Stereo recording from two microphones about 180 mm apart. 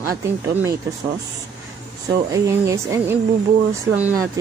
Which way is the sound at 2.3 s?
15° right (ahead or behind).